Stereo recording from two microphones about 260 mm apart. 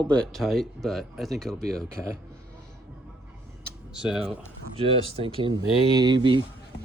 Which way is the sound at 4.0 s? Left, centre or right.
Centre.